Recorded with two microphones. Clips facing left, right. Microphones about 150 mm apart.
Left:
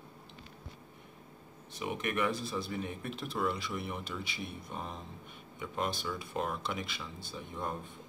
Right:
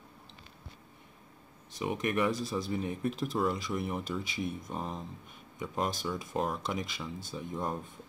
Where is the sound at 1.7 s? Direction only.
35° right (ahead or behind).